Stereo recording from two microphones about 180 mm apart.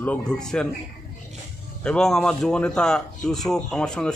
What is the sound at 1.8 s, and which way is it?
A man's voice, 5° left (ahead or behind).